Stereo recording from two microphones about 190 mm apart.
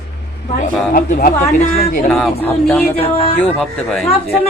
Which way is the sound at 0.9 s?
50° left (ahead or behind).